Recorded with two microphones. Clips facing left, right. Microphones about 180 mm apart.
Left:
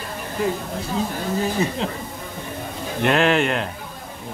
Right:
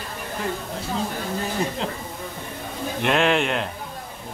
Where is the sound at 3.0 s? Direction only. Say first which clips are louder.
Left 3 dB; centre (ahead or behind).